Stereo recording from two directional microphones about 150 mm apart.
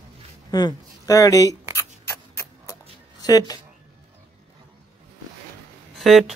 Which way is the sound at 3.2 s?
25° left (ahead or behind).